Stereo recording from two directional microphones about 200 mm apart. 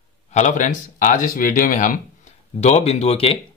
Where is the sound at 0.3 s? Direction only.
35° left (ahead or behind).